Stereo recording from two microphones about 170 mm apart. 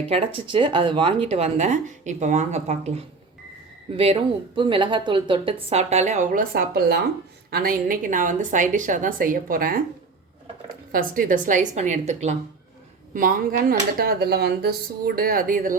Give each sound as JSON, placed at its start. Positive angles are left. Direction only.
{"t": 0.1, "sound": "speech", "side_deg": -35}
{"t": 6.5, "sound": "speech", "side_deg": -65}
{"t": 10.9, "sound": "speech", "side_deg": -55}
{"t": 13.1, "sound": "speech", "side_deg": -55}